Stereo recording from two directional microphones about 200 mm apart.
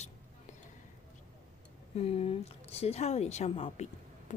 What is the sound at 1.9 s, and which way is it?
A woman's voice, 30° left (ahead or behind).